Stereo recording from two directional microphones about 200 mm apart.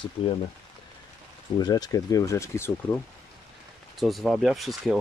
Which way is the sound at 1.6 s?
20° left (ahead or behind).